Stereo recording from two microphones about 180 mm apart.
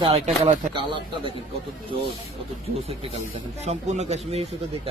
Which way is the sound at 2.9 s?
35° right (ahead or behind).